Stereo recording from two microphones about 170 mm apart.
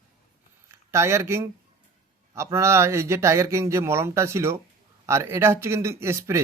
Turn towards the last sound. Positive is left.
turn(degrees=-15)  # may be behind; listen again after turning